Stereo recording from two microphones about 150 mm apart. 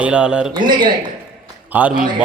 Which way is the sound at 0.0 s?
5° right (ahead or behind).